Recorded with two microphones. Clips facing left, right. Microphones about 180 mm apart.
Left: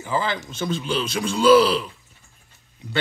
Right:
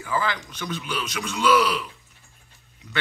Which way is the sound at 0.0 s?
25° left (ahead or behind).